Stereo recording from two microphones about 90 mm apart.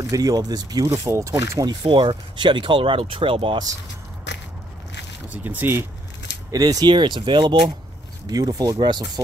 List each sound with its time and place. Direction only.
0.1 s speech: 45° right (ahead or behind)
0.9 s speech: 30° right (ahead or behind)
1.5 s speech: 45° right (ahead or behind)
1.8 s speech: 65° right (ahead or behind); by 3.5 s 85° right
5.3 s speech: 20° right (ahead or behind)
6.5 s speech: 45° right (ahead or behind); by 7.5 s 60° right (ahead or behind)
8.3 s speech: 45° right (ahead or behind)